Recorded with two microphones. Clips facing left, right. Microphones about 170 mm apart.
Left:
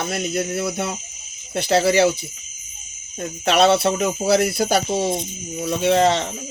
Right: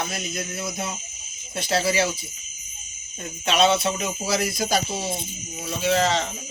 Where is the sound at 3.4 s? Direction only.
65° left (ahead or behind).